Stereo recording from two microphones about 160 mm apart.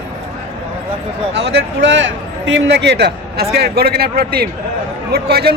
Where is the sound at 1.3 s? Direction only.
90° right; by 4.5 s 75° right (ahead or behind).